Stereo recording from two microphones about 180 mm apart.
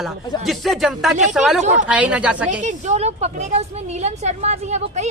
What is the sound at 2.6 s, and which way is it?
A woman's voice, 40° right (ahead or behind).